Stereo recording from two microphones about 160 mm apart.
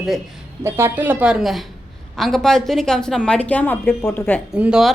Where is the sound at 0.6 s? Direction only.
15° right (ahead or behind); by 4.4 s 10° left (ahead or behind).